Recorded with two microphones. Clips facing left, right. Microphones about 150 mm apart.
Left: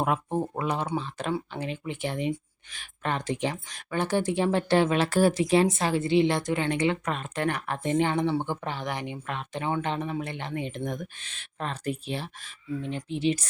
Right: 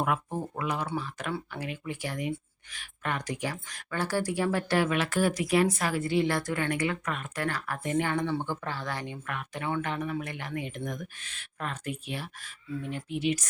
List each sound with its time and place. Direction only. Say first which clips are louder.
0.0 s speech: left 3 dB; 25° left (ahead or behind)